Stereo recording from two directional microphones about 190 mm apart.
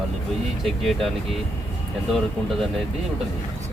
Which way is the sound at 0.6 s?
Centre (ahead or behind).